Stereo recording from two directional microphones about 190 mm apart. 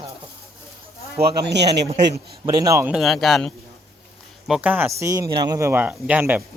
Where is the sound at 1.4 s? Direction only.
60° right (ahead or behind).